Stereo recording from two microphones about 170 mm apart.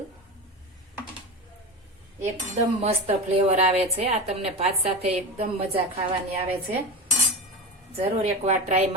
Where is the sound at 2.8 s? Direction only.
40° right (ahead or behind).